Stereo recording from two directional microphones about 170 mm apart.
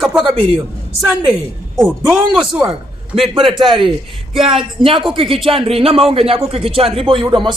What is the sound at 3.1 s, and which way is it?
A man's voice, 35° right (ahead or behind).